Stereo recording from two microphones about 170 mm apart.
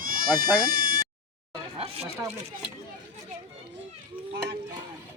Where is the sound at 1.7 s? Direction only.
35° right (ahead or behind).